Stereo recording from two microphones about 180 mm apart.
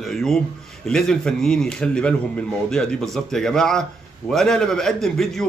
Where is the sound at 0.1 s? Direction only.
Centre (ahead or behind).